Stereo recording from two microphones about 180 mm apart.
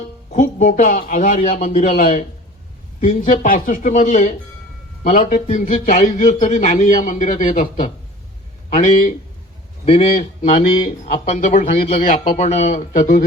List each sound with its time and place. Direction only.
0.3 s a man's voice: 45° left (ahead or behind)
8.7 s a man's voice: 45° left (ahead or behind)